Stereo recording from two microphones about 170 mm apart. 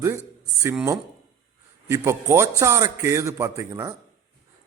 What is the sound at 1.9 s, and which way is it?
A man's voice, 15° right (ahead or behind).